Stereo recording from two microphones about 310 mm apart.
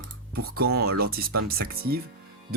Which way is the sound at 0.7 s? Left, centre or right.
Right.